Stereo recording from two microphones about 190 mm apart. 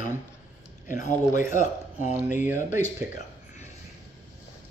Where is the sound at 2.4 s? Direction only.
10° right (ahead or behind).